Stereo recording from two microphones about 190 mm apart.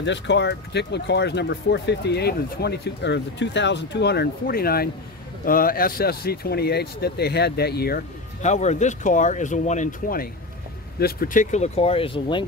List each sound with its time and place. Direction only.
0.0 s speech: 70° left (ahead or behind)
8.4 s speech: 35° left (ahead or behind)